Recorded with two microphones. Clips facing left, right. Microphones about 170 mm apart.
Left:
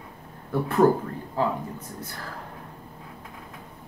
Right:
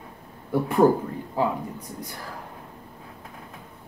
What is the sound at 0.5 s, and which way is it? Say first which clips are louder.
Speech: right 1 dB; 15° right (ahead or behind).